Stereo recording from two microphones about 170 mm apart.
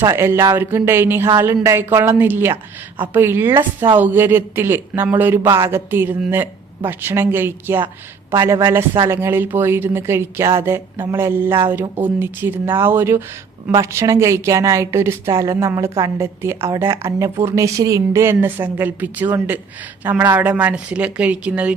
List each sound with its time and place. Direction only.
0.0 s a woman's voice: 15° right (ahead or behind)